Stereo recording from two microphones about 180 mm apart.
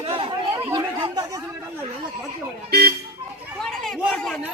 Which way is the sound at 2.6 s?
55° right (ahead or behind).